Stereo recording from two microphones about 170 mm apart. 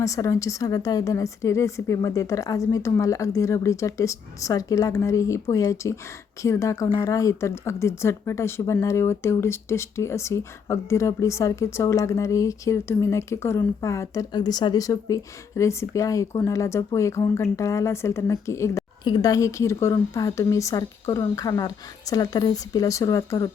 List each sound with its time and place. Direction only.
0.0 s a woman's voice: 20° left (ahead or behind)